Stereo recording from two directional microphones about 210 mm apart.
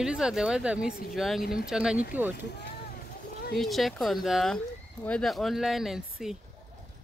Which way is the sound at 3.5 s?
Centre (ahead or behind).